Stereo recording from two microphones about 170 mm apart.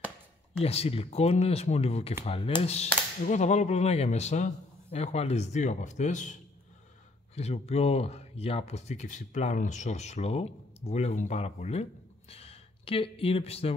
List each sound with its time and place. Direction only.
0.6 s speech: 35° left (ahead or behind)
7.3 s speech: 40° left (ahead or behind)